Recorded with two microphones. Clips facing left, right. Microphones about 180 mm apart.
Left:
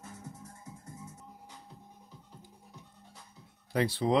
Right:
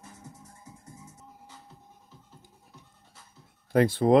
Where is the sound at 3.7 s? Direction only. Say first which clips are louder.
Right 7 dB; 50° right (ahead or behind).